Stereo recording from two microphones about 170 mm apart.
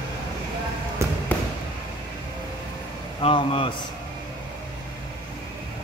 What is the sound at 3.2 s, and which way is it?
Speech, 30° left (ahead or behind).